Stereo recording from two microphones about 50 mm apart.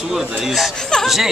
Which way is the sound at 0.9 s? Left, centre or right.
Centre.